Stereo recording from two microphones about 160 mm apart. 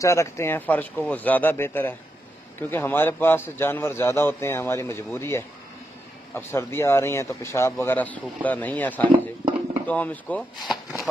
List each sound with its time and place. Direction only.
0.0 s a man's voice: 20° left (ahead or behind); by 11.1 s centre (ahead or behind)